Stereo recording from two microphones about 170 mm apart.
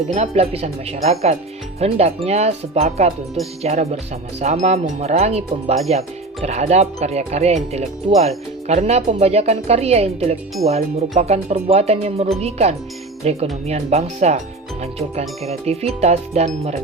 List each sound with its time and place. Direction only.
0.1 s speech: 40° right (ahead or behind)